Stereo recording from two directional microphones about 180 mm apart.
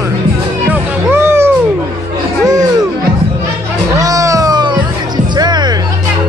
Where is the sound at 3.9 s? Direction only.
20° right (ahead or behind).